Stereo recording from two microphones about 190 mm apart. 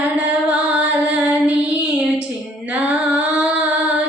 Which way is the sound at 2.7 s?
5° right (ahead or behind).